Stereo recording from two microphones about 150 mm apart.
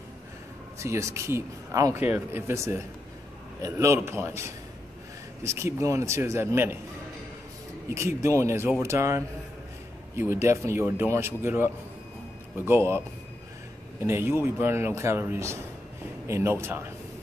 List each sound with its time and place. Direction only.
0.7 s a man's voice: 20° right (ahead or behind)
7.9 s a man's voice: 20° right (ahead or behind)
14.0 s a man's voice: 15° right (ahead or behind)